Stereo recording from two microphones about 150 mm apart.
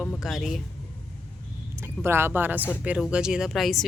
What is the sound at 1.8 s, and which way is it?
Speech, 15° right (ahead or behind).